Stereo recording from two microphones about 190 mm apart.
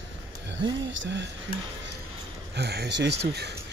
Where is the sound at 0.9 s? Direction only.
70° right (ahead or behind).